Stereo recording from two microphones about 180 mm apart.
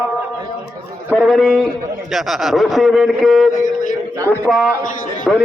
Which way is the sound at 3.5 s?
45° left (ahead or behind).